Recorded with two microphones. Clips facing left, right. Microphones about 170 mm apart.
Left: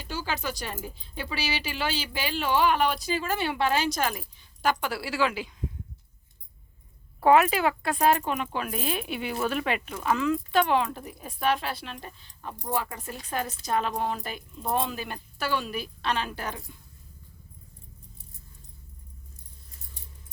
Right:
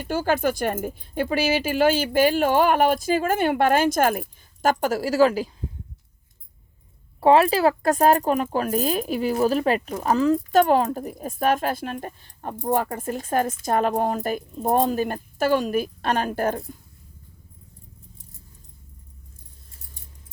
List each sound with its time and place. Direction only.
0.0 s speech: 50° right (ahead or behind)
7.2 s speech: 30° right (ahead or behind); by 16.7 s 50° right (ahead or behind)